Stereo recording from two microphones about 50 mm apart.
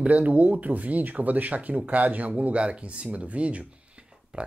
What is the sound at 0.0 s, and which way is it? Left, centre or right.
Speech, right.